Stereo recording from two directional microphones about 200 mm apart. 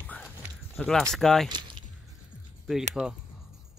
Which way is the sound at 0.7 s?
Centre (ahead or behind).